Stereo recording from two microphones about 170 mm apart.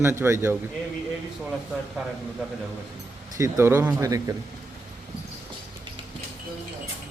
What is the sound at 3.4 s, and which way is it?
Speech, 15° right (ahead or behind).